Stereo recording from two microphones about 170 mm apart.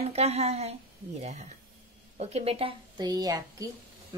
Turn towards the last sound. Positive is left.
turn(degrees=-20)  # may be behind; listen again after turning